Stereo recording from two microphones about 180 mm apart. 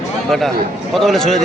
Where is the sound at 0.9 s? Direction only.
Centre (ahead or behind).